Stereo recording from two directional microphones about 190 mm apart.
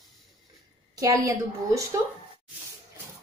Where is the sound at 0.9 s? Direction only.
15° right (ahead or behind).